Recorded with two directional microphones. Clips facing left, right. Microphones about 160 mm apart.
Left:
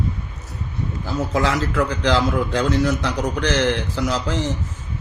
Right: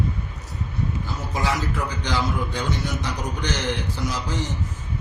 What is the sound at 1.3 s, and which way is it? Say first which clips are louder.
A man's voice: left 4 dB; 90° left.